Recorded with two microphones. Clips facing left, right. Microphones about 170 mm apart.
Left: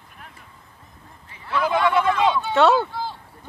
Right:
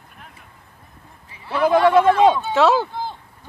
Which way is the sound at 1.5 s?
40° right (ahead or behind).